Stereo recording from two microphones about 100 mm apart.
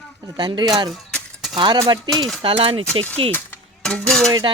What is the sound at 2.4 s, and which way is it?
Speech, 65° right (ahead or behind).